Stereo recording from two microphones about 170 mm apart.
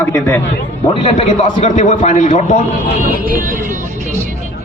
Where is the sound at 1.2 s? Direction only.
40° left (ahead or behind).